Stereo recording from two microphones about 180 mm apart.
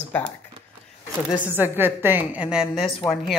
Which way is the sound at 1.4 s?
10° right (ahead or behind).